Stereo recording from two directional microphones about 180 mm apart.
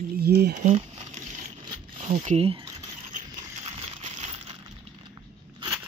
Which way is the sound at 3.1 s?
40° right (ahead or behind).